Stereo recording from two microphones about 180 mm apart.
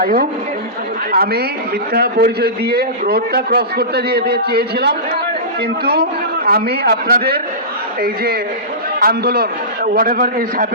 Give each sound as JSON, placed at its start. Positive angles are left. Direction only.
{"t": 0.0, "sound": "a woman's voice", "side_deg": -55}
{"t": 6.4, "sound": "a man's voice", "side_deg": -60}